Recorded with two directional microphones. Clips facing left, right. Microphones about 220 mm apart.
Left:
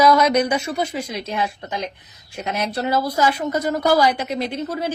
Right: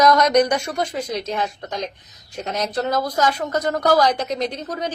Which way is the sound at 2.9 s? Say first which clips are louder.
Left 3 dB; 10° left (ahead or behind).